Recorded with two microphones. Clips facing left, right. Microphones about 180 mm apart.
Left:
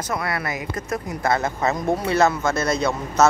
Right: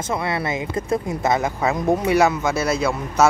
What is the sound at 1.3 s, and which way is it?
Speech, 15° right (ahead or behind).